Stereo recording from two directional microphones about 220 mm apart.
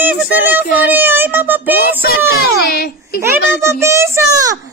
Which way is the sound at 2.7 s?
45° left (ahead or behind).